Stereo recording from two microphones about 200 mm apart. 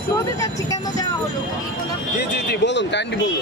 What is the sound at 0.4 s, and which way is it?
Vehicle, 15° left (ahead or behind).